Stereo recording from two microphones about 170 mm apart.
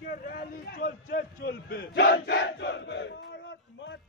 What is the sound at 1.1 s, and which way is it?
Battle cry, 75° left (ahead or behind).